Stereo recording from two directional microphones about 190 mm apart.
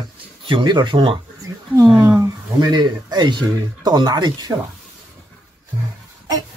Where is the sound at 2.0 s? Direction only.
15° right (ahead or behind).